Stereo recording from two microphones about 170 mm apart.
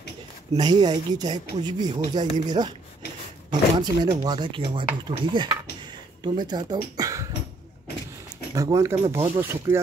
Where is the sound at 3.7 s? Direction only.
25° right (ahead or behind).